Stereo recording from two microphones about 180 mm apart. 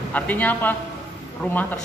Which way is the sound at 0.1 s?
10° left (ahead or behind).